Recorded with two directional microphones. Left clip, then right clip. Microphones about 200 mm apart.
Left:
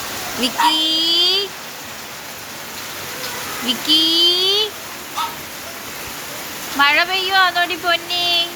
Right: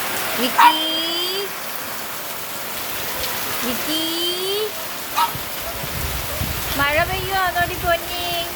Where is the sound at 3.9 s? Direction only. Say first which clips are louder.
Left 11 dB; 10° right (ahead or behind).